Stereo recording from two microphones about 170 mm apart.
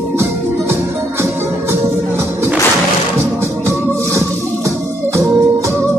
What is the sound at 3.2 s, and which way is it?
Music, 15° right (ahead or behind).